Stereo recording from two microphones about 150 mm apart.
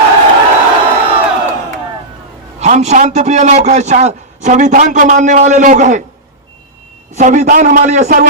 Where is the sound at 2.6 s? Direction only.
50° right (ahead or behind).